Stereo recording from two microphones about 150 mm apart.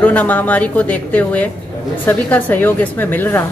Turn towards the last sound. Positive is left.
turn(degrees=10)  # may be behind; listen again after turning